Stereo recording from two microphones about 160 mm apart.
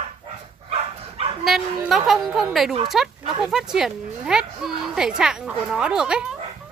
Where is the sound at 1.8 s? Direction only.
Centre (ahead or behind).